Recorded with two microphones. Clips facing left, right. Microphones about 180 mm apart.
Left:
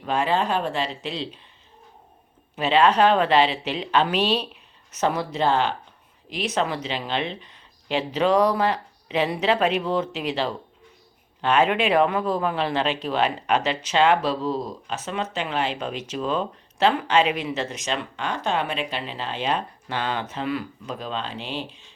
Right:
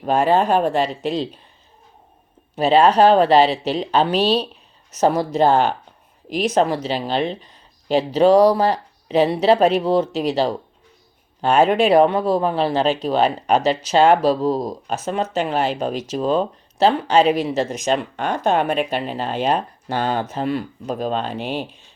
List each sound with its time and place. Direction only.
0.0 s speech: 45° right (ahead or behind)
2.6 s speech: 40° right (ahead or behind)